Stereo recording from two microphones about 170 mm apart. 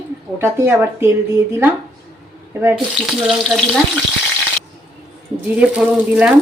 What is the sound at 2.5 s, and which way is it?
Speech, 15° right (ahead or behind).